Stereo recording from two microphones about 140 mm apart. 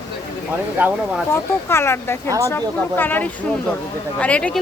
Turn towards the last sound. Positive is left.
turn(degrees=10)  # may be behind; listen again after turning